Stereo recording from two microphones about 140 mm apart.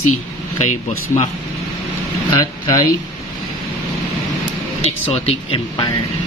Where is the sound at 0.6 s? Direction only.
55° left (ahead or behind).